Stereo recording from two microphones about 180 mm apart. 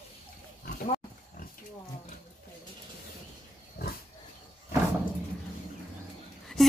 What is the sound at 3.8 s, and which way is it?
Pig, 60° left (ahead or behind).